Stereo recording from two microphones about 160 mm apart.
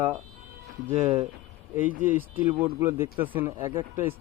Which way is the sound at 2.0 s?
10° right (ahead or behind).